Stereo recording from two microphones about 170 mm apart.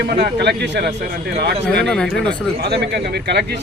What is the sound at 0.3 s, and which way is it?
A man's voice, 85° right.